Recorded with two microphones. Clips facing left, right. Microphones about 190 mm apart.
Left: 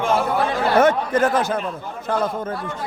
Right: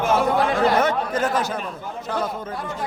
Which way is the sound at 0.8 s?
50° left (ahead or behind).